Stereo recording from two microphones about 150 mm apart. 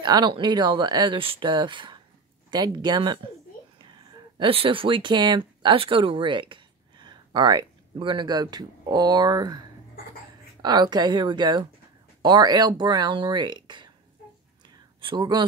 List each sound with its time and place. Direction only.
0.0 s speech: 30° right (ahead or behind)
4.4 s speech: 35° right (ahead or behind)
14.7 s a sound: 35° right (ahead or behind)